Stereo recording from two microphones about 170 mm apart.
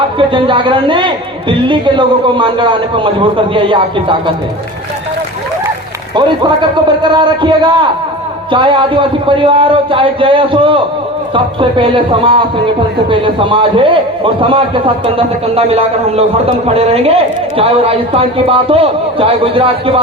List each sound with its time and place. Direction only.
0.2 s a man's voice: 30° right (ahead or behind)
6.1 s a man's voice: 30° right (ahead or behind)